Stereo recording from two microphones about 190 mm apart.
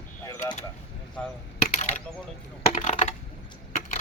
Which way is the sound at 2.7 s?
35° left (ahead or behind).